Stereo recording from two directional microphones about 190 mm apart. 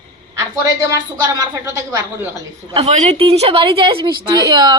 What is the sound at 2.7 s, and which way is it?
A woman's voice, 35° right (ahead or behind).